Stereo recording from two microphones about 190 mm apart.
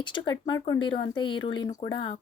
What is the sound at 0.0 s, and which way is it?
Speech, 25° left (ahead or behind).